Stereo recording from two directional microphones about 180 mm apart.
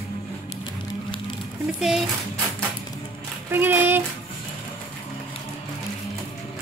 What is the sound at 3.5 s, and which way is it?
Child singing, 10° right (ahead or behind).